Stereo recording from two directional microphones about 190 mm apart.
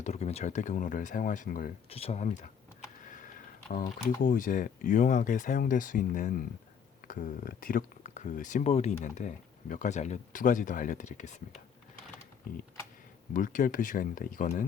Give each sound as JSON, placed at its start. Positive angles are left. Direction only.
{"t": 0.0, "sound": "speech", "side_deg": 35}
{"t": 1.9, "sound": "speech", "side_deg": 30}
{"t": 4.2, "sound": "speech", "side_deg": 45}
{"t": 13.3, "sound": "speech", "side_deg": 45}